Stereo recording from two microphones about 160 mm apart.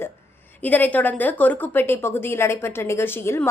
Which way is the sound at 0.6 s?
10° left (ahead or behind).